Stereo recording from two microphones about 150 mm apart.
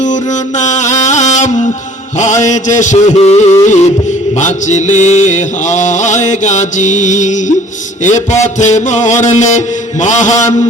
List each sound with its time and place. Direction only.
0.0 s music: 55° left (ahead or behind)
2.1 s mantra: 55° left (ahead or behind)